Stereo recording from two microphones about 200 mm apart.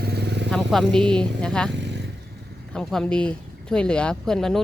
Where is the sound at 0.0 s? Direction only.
55° right (ahead or behind).